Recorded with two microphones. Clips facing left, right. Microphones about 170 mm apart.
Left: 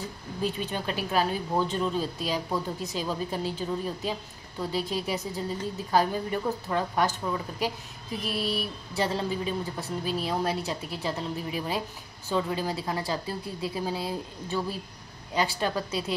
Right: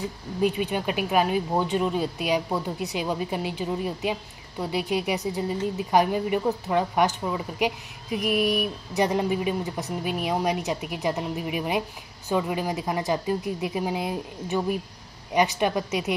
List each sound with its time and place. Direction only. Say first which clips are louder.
0.4 s a woman's voice: right 6 dB; 15° right (ahead or behind)